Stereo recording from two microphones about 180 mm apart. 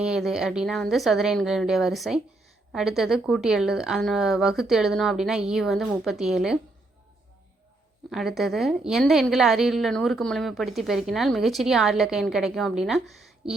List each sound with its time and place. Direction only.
0.0 s a woman's voice: centre (ahead or behind)
8.1 s a woman's voice: centre (ahead or behind)